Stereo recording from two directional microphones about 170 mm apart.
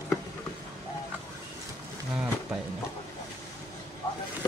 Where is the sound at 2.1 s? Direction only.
5° right (ahead or behind).